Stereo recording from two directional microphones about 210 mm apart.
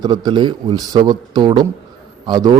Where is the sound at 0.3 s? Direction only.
20° right (ahead or behind).